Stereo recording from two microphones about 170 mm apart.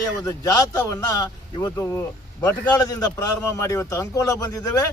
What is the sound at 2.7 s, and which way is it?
Speech, 20° left (ahead or behind).